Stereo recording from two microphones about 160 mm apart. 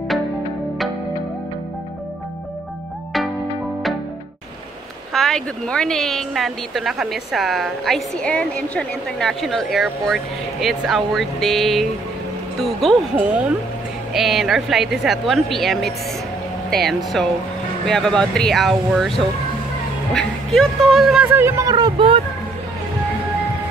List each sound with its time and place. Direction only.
5.1 s a woman's voice: 5° left (ahead or behind); by 22.2 s 35° right (ahead or behind)